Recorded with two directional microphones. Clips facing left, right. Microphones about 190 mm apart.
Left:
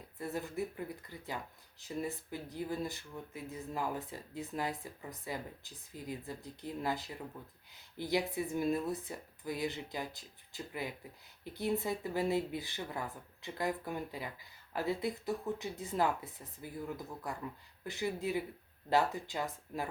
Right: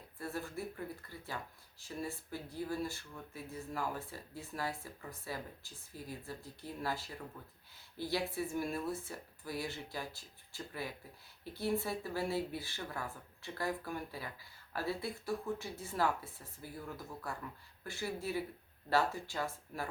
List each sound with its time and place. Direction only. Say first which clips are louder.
0.2 s speech: left 3 dB; 20° left (ahead or behind)